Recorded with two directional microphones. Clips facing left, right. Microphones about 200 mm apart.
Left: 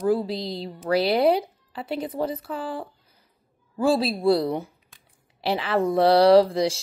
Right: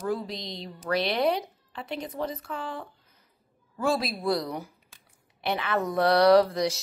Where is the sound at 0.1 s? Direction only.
30° left (ahead or behind).